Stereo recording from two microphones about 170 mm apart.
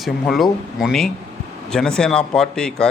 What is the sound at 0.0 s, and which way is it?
Speech, centre (ahead or behind).